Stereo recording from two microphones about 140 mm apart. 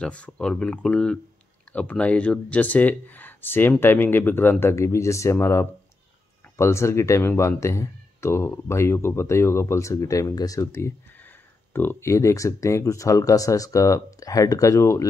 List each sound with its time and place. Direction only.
0.0 s speech: 10° left (ahead or behind)